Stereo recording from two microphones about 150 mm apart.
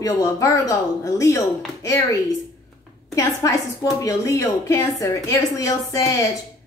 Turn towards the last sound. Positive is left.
turn(degrees=20)  # may be behind; listen again after turning